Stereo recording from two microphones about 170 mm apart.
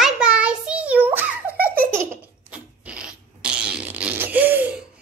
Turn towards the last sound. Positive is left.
turn(degrees=-10)  # may be behind; listen again after turning